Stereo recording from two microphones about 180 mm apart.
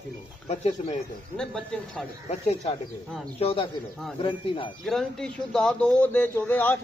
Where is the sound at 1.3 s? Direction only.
5° left (ahead or behind).